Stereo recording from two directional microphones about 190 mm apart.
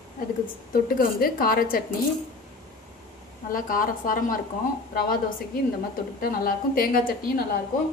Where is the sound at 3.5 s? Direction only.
45° left (ahead or behind).